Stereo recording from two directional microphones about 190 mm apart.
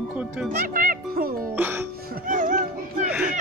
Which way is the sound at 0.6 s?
50° right (ahead or behind).